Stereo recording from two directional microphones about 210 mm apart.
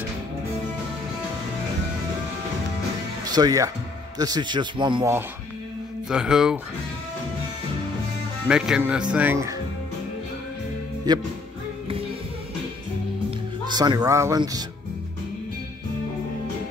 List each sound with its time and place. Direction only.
3.3 s a man's voice: 20° right (ahead or behind)
6.0 s speech: 5° right (ahead or behind)
8.5 s speech: 5° right (ahead or behind)
11.1 s a man's voice: 20° right (ahead or behind)
13.7 s a man's voice: 20° right (ahead or behind)